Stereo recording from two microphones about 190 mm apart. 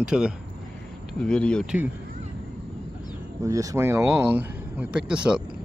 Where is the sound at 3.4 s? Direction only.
15° right (ahead or behind).